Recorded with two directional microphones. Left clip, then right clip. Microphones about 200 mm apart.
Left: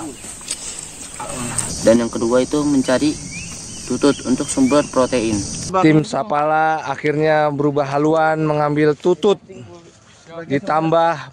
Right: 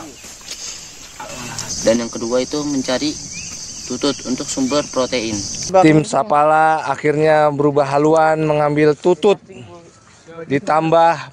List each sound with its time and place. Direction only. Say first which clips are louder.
1.9 s speech: left 2 dB; 20° right (ahead or behind)
5.7 s a man's voice: right 3 dB; centre (ahead or behind)
10.5 s a man's voice: right 2 dB; centre (ahead or behind)